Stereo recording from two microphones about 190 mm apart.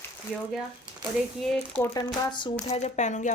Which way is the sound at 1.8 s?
20° left (ahead or behind).